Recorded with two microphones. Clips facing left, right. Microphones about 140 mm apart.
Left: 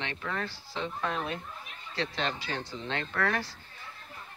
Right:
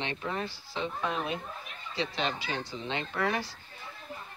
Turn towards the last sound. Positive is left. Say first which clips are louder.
# even
turn(degrees=-10)  # may be behind; listen again after turning